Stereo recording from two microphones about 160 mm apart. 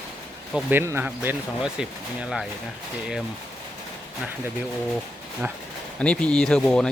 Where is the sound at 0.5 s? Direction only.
15° right (ahead or behind).